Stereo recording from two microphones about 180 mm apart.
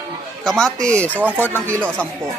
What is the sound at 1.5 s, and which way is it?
Speech, 15° right (ahead or behind).